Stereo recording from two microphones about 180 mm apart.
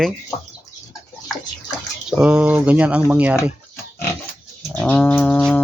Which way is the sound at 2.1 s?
5° right (ahead or behind).